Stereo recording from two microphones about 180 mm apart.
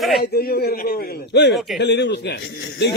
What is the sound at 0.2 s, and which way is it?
A man's voice, 60° left (ahead or behind).